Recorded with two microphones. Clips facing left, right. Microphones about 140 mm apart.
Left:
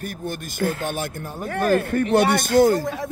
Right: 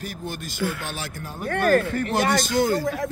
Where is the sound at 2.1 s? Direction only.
60° left (ahead or behind).